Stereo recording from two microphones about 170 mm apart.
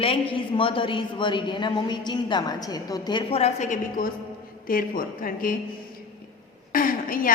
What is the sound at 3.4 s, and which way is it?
A woman's voice, 40° left (ahead or behind).